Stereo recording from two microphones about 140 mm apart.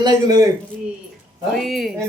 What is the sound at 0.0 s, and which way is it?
Speech, 30° right (ahead or behind).